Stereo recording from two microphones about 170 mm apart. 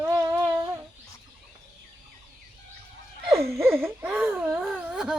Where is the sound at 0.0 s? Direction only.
20° right (ahead or behind).